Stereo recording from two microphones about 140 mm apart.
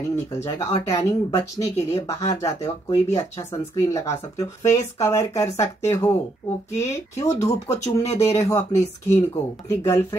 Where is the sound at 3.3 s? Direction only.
20° left (ahead or behind).